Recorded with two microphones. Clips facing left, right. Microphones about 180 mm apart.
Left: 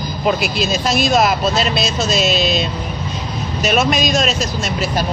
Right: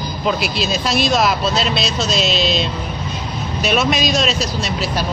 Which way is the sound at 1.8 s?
50° left (ahead or behind).